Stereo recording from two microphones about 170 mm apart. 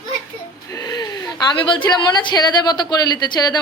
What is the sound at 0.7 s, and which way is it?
A woman's voice, 20° left (ahead or behind).